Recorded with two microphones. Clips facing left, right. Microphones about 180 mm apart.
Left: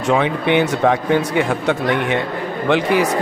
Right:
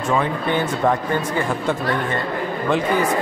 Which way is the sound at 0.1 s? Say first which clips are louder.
Left 5 dB; 75° left (ahead or behind).